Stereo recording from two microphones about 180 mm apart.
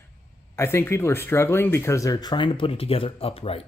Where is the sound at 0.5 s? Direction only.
15° left (ahead or behind).